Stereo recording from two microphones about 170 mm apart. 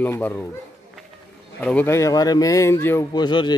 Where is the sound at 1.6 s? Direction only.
10° left (ahead or behind).